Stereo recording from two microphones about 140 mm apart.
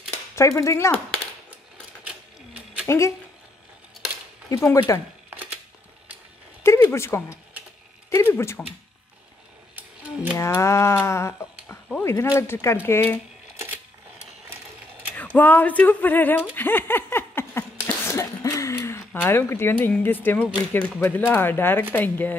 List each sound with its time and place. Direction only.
0.4 s speech: 25° left (ahead or behind)
2.0 s a sound: 10° right (ahead or behind)
4.5 s speech: 20° left (ahead or behind)
5.3 s a sound: 10° right (ahead or behind)
6.6 s speech: 20° left (ahead or behind)
10.3 s speech: 20° left (ahead or behind)
15.1 s speech: 10° left (ahead or behind)
16.5 s a sound: 15° left (ahead or behind)
21.0 s speech: 15° left (ahead or behind)